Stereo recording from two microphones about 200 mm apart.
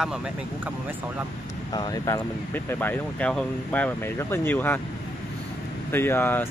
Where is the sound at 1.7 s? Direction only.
20° left (ahead or behind).